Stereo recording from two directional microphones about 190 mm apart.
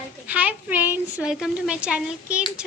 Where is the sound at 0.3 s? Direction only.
10° right (ahead or behind).